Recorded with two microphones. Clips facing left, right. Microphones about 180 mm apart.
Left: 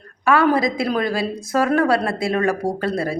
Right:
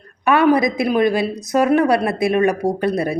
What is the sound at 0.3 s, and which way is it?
A woman's voice, 20° right (ahead or behind).